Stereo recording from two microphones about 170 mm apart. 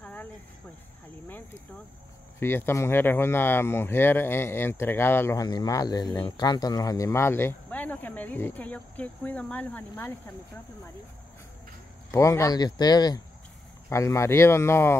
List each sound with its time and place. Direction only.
0.0 s cricket: 10° left (ahead or behind)
2.4 s speech: 15° left (ahead or behind)
12.1 s speech: 15° left (ahead or behind)